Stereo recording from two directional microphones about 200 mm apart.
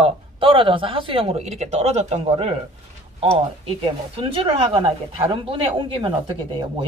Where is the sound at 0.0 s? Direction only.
25° right (ahead or behind).